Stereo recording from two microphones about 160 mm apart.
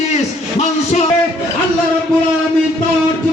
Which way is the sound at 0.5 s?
40° left (ahead or behind).